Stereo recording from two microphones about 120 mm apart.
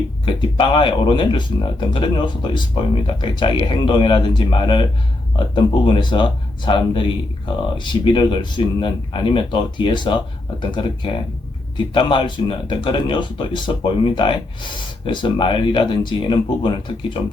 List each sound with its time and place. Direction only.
0.3 s speech: 45° left (ahead or behind)